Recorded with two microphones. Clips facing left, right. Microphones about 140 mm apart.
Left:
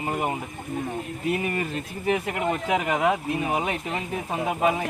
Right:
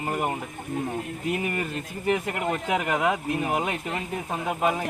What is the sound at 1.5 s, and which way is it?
Speech, 5° left (ahead or behind).